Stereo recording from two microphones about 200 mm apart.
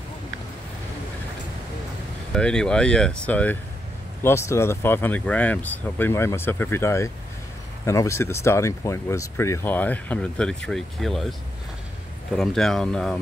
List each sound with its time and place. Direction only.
2.3 s speech: 5° left (ahead or behind)
12.4 s speech: centre (ahead or behind)